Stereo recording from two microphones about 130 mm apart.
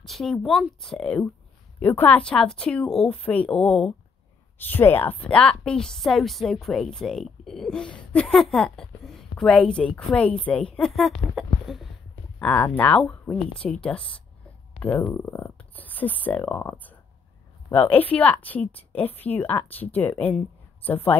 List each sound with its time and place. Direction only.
0.0 s a woman's voice: centre (ahead or behind)
12.4 s speech: 10° left (ahead or behind)